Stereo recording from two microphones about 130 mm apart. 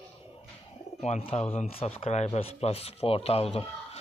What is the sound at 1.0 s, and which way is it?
Speech, 60° left (ahead or behind).